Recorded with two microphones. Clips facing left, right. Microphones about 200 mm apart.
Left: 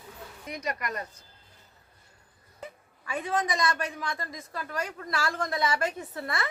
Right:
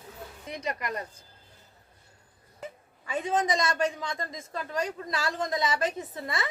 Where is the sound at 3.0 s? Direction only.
20° right (ahead or behind).